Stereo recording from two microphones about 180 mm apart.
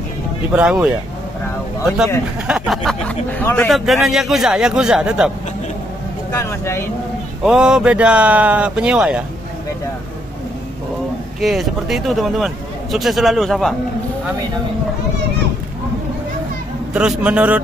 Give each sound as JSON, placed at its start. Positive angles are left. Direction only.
{"t": 0.6, "sound": "speech", "side_deg": -5}
{"t": 2.4, "sound": "speech", "side_deg": -5}
{"t": 6.3, "sound": "speech", "side_deg": 15}
{"t": 7.4, "sound": "speech", "side_deg": -5}
{"t": 11.4, "sound": "speech", "side_deg": 0}
{"t": 16.9, "sound": "speech", "side_deg": -5}